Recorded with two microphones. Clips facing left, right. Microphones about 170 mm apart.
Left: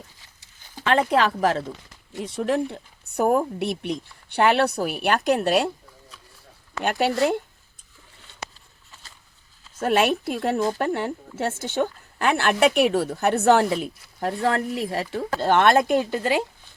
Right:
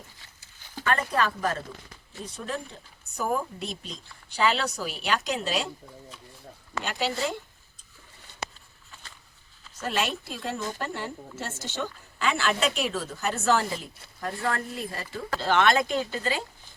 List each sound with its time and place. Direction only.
0.9 s speech: 85° left; by 5.7 s 55° left (ahead or behind)
6.8 s speech: 60° left (ahead or behind)
9.8 s speech: 55° left (ahead or behind); by 15.2 s 75° left (ahead or behind)
15.3 s speech: 50° left (ahead or behind)